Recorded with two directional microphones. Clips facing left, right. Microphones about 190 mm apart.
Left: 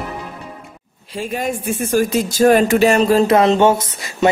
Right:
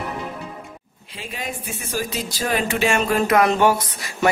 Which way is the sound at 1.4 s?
50° left (ahead or behind).